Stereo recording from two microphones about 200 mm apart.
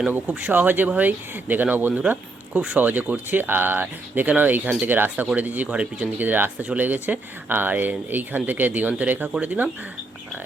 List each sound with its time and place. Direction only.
0.0 s speech: 10° right (ahead or behind)